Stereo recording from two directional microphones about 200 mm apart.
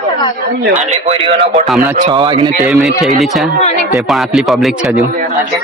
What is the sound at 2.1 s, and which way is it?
Speech, 20° right (ahead or behind).